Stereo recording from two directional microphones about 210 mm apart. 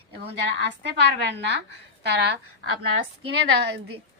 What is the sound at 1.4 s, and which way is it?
Speech, 55° right (ahead or behind).